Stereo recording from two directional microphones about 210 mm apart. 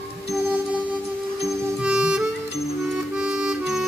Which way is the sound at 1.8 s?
5° right (ahead or behind).